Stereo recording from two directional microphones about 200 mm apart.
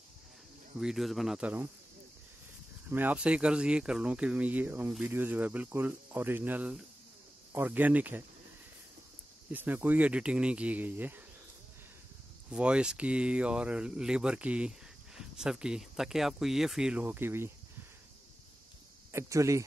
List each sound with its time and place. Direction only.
0.7 s speech: centre (ahead or behind)
2.9 s speech: 10° right (ahead or behind)
9.5 s speech: 10° right (ahead or behind)
12.4 s speech: 5° right (ahead or behind)
19.1 s speech: 15° right (ahead or behind)